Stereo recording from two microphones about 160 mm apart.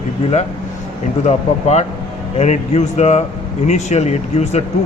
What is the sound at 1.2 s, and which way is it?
Speech, 45° left (ahead or behind).